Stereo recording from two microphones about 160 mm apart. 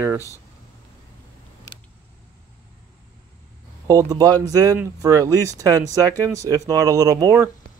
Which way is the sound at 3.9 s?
20° right (ahead or behind).